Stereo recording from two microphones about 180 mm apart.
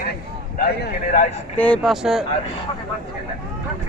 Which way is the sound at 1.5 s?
10° left (ahead or behind).